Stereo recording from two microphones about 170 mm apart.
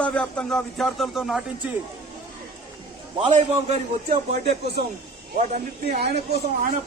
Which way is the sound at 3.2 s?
40° right (ahead or behind).